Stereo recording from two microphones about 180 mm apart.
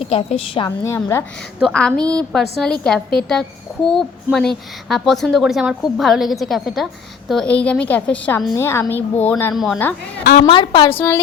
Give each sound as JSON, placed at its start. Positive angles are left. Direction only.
{"t": 0.0, "sound": "a woman's voice", "side_deg": 35}
{"t": 1.5, "sound": "a woman's voice", "side_deg": 0}
{"t": 8.5, "sound": "a woman's voice", "side_deg": 15}
{"t": 10.4, "sound": "a woman's voice", "side_deg": 25}
{"t": 10.9, "sound": "a woman's voice", "side_deg": 15}